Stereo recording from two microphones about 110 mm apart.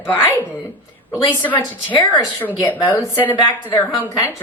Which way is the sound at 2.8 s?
35° left (ahead or behind).